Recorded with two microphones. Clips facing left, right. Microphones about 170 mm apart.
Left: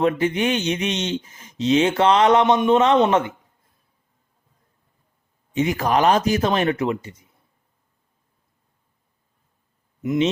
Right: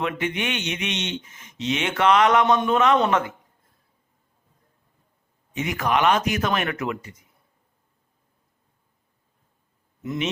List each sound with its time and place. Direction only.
0.0 s speech: 35° left (ahead or behind)
5.5 s speech: 30° left (ahead or behind)